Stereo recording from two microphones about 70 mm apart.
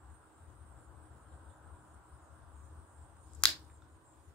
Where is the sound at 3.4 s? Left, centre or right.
Centre.